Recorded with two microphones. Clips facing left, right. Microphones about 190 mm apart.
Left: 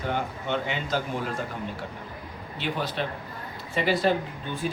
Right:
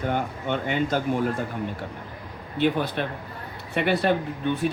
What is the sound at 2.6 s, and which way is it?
A man's voice, 55° right (ahead or behind).